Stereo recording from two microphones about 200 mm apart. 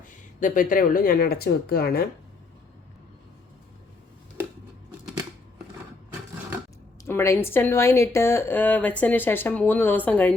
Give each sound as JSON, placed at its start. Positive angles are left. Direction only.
{"t": 0.3, "sound": "speech", "side_deg": 40}
{"t": 7.0, "sound": "speech", "side_deg": 15}